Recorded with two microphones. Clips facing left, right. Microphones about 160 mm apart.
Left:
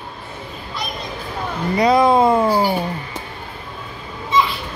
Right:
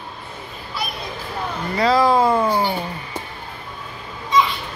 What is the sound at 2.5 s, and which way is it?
Speech, 10° left (ahead or behind).